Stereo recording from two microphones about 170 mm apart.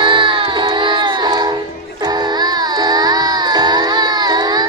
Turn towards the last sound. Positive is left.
turn(degrees=-25)  # may be behind; listen again after turning